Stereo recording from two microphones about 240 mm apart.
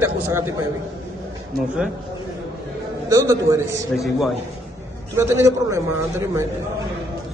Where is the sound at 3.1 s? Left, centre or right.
Centre.